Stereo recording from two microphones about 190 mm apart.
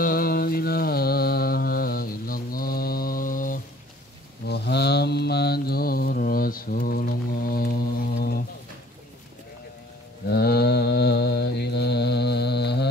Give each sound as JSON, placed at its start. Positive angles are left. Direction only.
{"t": 0.0, "sound": "mantra", "side_deg": 50}
{"t": 4.5, "sound": "mantra", "side_deg": 60}
{"t": 10.2, "sound": "mantra", "side_deg": 55}